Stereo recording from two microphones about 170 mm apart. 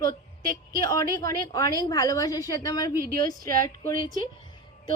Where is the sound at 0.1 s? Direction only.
55° right (ahead or behind).